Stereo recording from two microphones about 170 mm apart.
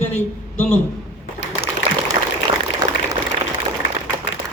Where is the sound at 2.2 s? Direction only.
40° right (ahead or behind).